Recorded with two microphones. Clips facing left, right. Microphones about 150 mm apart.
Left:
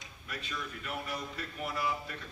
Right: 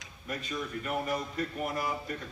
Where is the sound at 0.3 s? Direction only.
45° right (ahead or behind).